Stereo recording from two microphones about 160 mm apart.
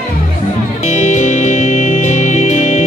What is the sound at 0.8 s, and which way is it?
Music, 50° left (ahead or behind).